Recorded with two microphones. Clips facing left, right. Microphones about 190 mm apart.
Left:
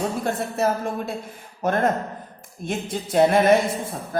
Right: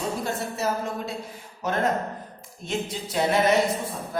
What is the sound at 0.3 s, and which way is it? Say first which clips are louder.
A man's voice: left 5 dB; 55° left (ahead or behind).